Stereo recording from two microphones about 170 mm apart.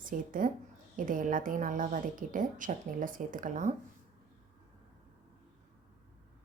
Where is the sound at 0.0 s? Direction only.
55° right (ahead or behind).